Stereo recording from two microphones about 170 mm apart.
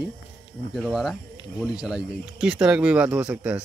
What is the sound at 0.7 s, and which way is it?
Speech, 5° right (ahead or behind).